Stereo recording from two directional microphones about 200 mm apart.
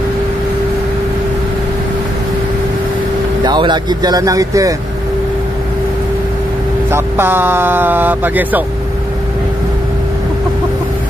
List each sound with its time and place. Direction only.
3.4 s speech: 20° right (ahead or behind)
6.9 s speech: 10° right (ahead or behind)